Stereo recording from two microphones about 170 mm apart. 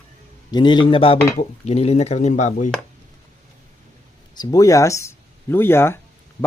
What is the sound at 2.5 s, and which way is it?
Chopping, 50° left (ahead or behind).